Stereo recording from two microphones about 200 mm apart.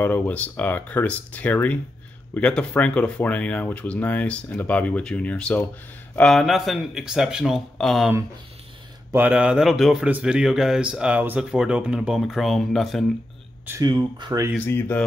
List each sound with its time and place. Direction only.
0.0 s speech: 10° left (ahead or behind)
9.1 s speech: 10° right (ahead or behind)
13.7 s speech: 20° right (ahead or behind)
14.5 s speech: 10° left (ahead or behind)